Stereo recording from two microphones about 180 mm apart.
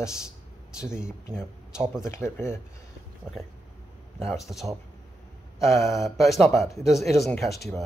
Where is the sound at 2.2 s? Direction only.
15° left (ahead or behind).